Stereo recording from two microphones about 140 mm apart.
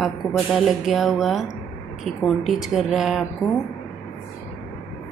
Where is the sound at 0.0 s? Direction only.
Centre (ahead or behind).